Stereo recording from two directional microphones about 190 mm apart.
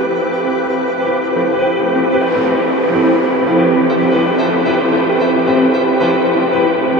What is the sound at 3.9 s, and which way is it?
Music, centre (ahead or behind).